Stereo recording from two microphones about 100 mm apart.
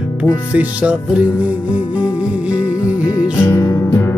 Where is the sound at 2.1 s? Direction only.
10° right (ahead or behind).